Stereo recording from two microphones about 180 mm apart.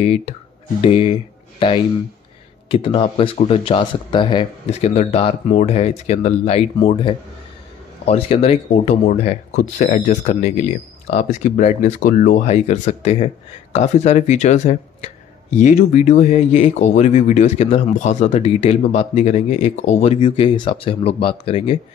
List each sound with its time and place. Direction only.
0.0 s speech: 35° left (ahead or behind)
2.7 s speech: 30° left (ahead or behind)